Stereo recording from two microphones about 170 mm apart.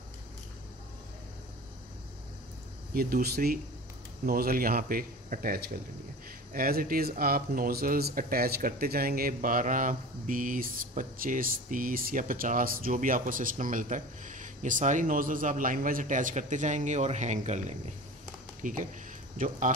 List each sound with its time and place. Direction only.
2.9 s speech: 60° right (ahead or behind)